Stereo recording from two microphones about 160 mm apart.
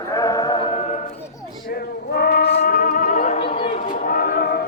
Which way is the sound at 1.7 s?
75° left (ahead or behind).